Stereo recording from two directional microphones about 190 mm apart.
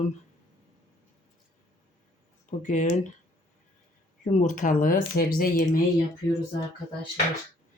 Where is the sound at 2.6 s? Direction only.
40° left (ahead or behind).